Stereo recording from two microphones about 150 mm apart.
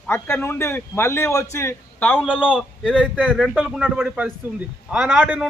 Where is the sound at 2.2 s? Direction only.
5° right (ahead or behind).